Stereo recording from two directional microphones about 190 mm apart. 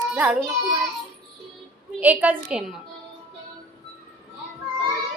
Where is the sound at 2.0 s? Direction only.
10° right (ahead or behind).